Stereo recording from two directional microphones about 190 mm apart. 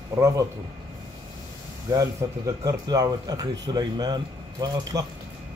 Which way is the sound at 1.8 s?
20° right (ahead or behind).